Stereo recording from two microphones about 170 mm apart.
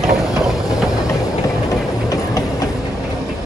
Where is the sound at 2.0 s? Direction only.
20° left (ahead or behind).